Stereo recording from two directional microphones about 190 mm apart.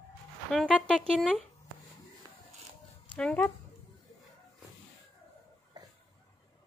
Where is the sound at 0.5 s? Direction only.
5° left (ahead or behind).